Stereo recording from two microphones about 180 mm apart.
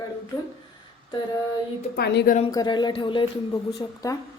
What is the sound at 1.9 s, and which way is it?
Speech, 65° left (ahead or behind).